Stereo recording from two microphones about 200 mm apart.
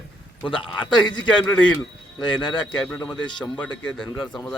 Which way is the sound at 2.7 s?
5° left (ahead or behind).